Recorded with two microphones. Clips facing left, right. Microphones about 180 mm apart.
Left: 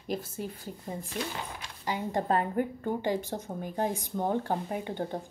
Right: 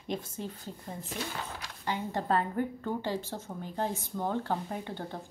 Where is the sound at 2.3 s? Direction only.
15° left (ahead or behind).